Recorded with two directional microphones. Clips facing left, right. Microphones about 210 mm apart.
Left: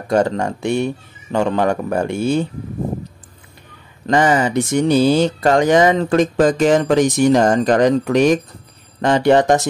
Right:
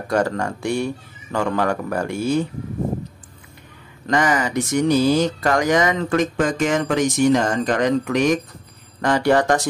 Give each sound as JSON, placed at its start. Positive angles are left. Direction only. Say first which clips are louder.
{"t": 0.1, "sound": "speech", "louder": "left 4 dB", "side_deg": 20}
{"t": 4.1, "sound": "speech", "louder": "left 5 dB", "side_deg": 30}
{"t": 9.0, "sound": "speech", "louder": "left 4 dB", "side_deg": 25}